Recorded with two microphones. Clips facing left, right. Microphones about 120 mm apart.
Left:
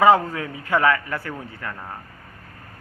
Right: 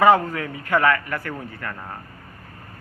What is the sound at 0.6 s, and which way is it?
A man's voice, 15° left (ahead or behind).